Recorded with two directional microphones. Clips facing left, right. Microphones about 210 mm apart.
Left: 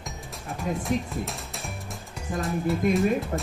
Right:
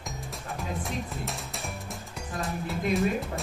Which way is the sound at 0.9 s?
50° left (ahead or behind).